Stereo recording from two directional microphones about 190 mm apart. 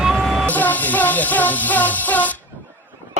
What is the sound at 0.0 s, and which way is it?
Music, centre (ahead or behind).